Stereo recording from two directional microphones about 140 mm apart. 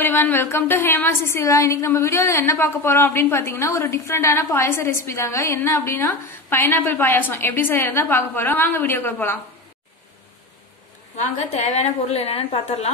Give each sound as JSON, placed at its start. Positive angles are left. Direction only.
{"t": 0.0, "sound": "a woman's voice", "side_deg": 15}
{"t": 11.1, "sound": "a woman's voice", "side_deg": 55}